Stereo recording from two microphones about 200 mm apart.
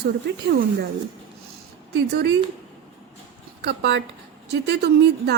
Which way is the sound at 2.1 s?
55° right (ahead or behind).